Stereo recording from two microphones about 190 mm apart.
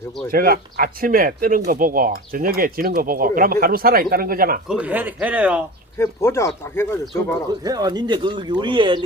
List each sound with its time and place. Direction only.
0.3 s speech: 50° right (ahead or behind)
4.7 s speech: 10° right (ahead or behind)
6.0 s speech: 15° left (ahead or behind)
7.6 s speech: 20° right (ahead or behind)